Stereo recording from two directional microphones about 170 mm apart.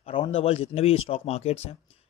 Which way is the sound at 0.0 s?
30° left (ahead or behind).